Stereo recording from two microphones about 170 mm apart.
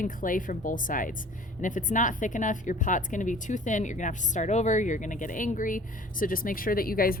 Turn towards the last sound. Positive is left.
turn(degrees=60)  # may be behind; listen again after turning